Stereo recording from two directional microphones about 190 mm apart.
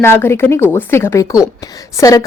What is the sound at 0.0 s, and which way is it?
A woman's voice, 15° left (ahead or behind).